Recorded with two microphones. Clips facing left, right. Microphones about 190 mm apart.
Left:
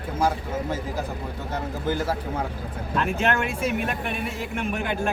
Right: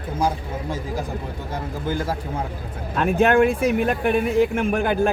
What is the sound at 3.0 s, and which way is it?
Speech, 50° right (ahead or behind).